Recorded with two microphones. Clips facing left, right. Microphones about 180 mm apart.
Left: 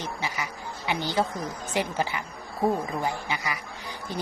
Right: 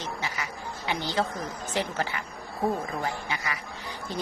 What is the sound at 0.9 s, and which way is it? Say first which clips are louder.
A woman's voice: left 2 dB; 15° left (ahead or behind).